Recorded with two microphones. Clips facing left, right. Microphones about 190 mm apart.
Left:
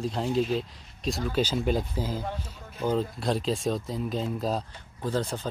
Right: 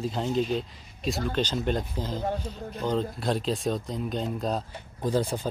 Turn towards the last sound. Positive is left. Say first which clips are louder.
# right 3 dB
turn(degrees=-10)  # may be behind; listen again after turning